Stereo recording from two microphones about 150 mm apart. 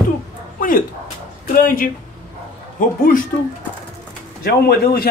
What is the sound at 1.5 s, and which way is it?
Speech, 70° left (ahead or behind).